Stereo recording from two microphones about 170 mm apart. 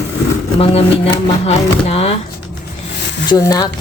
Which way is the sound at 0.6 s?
35° left (ahead or behind).